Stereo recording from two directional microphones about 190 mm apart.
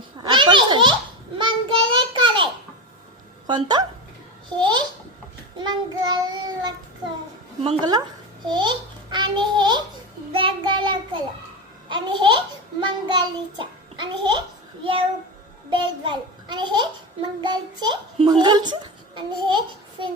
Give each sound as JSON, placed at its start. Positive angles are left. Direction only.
{"t": 0.2, "sound": "a sound", "side_deg": -25}
{"t": 1.4, "sound": "child singing", "side_deg": -25}
{"t": 3.4, "sound": "a woman's voice", "side_deg": -20}
{"t": 5.5, "sound": "child singing", "side_deg": -20}
{"t": 7.6, "sound": "a woman's voice", "side_deg": -25}
{"t": 10.3, "sound": "child singing", "side_deg": -25}
{"t": 11.9, "sound": "a child's voice", "side_deg": -25}